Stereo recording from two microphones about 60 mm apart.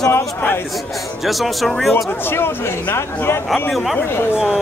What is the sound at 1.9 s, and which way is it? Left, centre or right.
Speech, left.